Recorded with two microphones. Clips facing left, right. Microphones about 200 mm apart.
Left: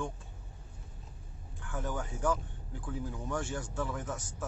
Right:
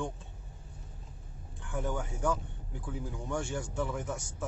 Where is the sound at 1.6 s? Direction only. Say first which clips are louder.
Right 2 dB; 20° right (ahead or behind).